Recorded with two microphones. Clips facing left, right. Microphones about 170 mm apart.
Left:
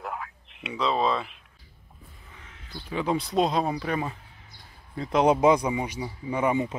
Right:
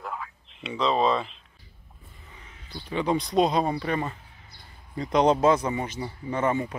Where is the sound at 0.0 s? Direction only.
5° left (ahead or behind).